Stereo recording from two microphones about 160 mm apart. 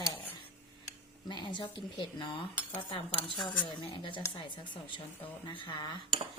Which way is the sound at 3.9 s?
30° left (ahead or behind).